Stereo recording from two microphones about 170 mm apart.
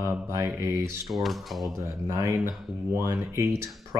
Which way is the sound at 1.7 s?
15° right (ahead or behind).